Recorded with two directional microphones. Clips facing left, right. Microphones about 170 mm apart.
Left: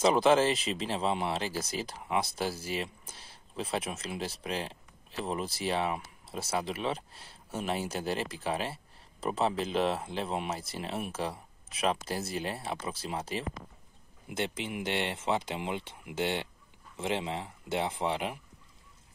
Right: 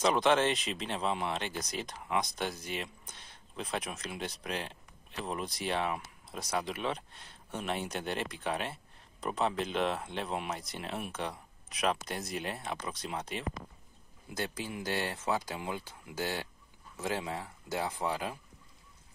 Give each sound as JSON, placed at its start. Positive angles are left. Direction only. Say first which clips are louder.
{"t": 0.0, "sound": "speech", "louder": "left 3 dB", "side_deg": 5}
{"t": 12.4, "sound": "speech", "louder": "left 2 dB", "side_deg": 0}
{"t": 14.3, "sound": "speech", "louder": "left 3 dB", "side_deg": 25}